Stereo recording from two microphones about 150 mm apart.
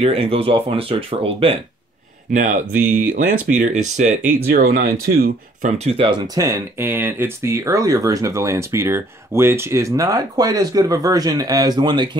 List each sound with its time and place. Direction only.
0.0 s speech: 40° right (ahead or behind)
2.3 s speech: 60° right (ahead or behind)
2.7 s speech: 10° right (ahead or behind)
3.5 s speech: 55° right (ahead or behind)
4.5 s speech: 90° right
5.9 s speech: 35° right (ahead or behind)